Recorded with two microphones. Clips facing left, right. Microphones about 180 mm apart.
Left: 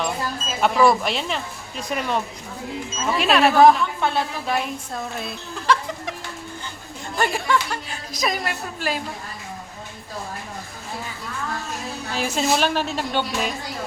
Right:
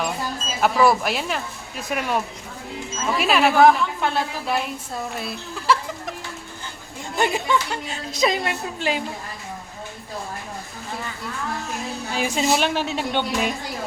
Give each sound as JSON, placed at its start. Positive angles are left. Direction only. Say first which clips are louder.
{"t": 0.6, "sound": "speech", "louder": "even", "side_deg": -5}
{"t": 7.2, "sound": "a woman's voice", "louder": "right 1 dB", "side_deg": -20}
{"t": 12.1, "sound": "a woman's voice", "louder": "right 1 dB", "side_deg": -10}